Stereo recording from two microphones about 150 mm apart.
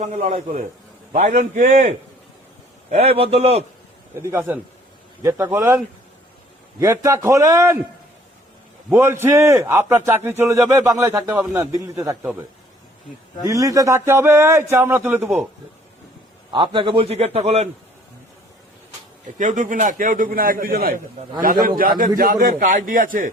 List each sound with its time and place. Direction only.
0.0 s a man's voice: 50° right (ahead or behind)
4.1 s a man's voice: 15° right (ahead or behind)
8.9 s a man's voice: 15° right (ahead or behind)
13.5 s a man's voice: 20° right (ahead or behind)
16.5 s a man's voice: 35° right (ahead or behind)
19.4 s a man's voice: 55° right (ahead or behind); by 21.0 s 80° right
21.4 s a man's voice: 70° right (ahead or behind)